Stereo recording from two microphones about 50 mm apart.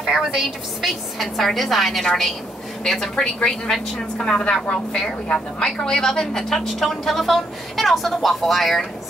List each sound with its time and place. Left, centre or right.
0.0 s a woman's voice: centre